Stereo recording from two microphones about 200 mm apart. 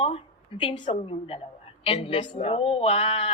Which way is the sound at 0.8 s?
35° left (ahead or behind).